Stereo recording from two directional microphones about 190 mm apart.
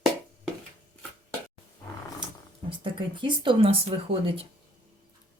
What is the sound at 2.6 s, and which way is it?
Speech, 25° right (ahead or behind).